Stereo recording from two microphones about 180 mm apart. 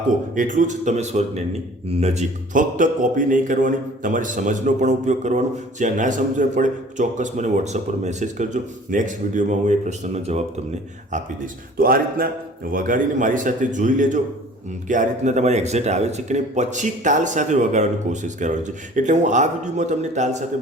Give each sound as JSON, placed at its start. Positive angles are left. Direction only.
{"t": 0.3, "sound": "speech", "side_deg": -45}
{"t": 11.8, "sound": "speech", "side_deg": -55}